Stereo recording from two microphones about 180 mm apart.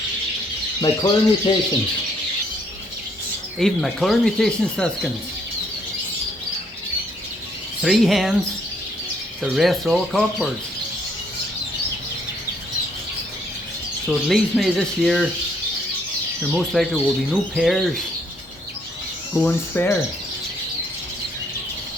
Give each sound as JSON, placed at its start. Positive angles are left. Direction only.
{"t": 0.8, "sound": "speech", "side_deg": 25}
{"t": 3.6, "sound": "speech", "side_deg": 0}
{"t": 7.8, "sound": "speech", "side_deg": 0}
{"t": 9.4, "sound": "speech", "side_deg": 0}
{"t": 14.1, "sound": "speech", "side_deg": 0}
{"t": 16.5, "sound": "speech", "side_deg": 0}
{"t": 19.4, "sound": "cricket", "side_deg": 10}